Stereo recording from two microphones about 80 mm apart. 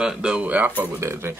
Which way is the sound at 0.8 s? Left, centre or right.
Right.